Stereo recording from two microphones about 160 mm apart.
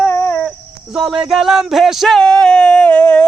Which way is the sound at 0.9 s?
5° right (ahead or behind).